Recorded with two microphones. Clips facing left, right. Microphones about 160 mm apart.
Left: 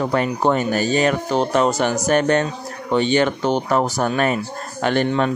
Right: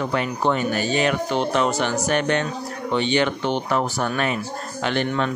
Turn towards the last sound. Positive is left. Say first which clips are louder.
# left 4 dB
turn(degrees=45)  # may be behind; listen again after turning